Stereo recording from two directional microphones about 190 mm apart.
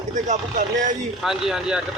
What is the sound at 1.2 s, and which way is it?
Speech, centre (ahead or behind).